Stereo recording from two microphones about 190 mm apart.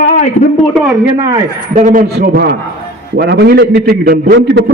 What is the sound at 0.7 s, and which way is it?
Speech, centre (ahead or behind).